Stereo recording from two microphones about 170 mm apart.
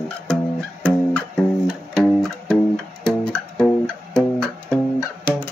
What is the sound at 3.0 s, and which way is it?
Music, 5° left (ahead or behind).